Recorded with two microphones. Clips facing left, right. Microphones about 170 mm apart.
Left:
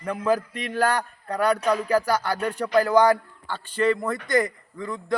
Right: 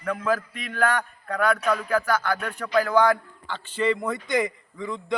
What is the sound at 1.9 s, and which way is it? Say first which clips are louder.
Speech: left 1 dB; 35° left (ahead or behind).